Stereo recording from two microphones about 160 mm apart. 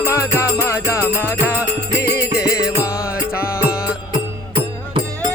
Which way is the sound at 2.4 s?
90° left.